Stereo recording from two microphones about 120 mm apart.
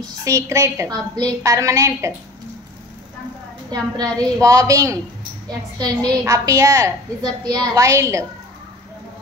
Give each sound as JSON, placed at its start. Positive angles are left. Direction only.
{"t": 0.2, "sound": "a woman's voice", "side_deg": -25}
{"t": 4.0, "sound": "a woman's voice", "side_deg": -30}